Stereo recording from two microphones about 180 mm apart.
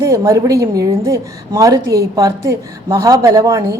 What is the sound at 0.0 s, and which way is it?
A woman's voice, 15° right (ahead or behind).